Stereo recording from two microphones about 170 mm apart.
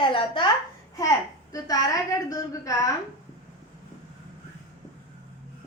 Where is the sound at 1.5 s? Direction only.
20° left (ahead or behind).